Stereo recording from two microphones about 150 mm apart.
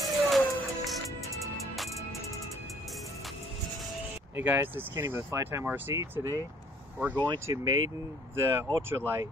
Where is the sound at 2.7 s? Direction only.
Centre (ahead or behind).